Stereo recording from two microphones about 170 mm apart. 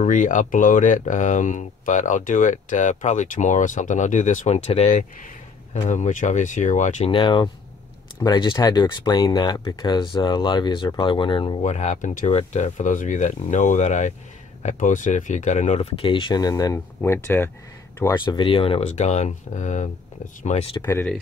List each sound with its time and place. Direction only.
0.0 s speech: 50° left (ahead or behind)
7.1 s speech: 30° left (ahead or behind)
11.6 s speech: 45° left (ahead or behind); by 17.5 s 15° left (ahead or behind)
18.1 s speech: 25° left (ahead or behind)
20.8 s speech: 15° left (ahead or behind)